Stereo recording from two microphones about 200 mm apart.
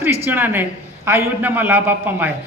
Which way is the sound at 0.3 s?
10° right (ahead or behind).